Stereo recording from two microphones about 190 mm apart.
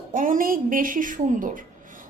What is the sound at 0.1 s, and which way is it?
A woman's voice, 45° right (ahead or behind).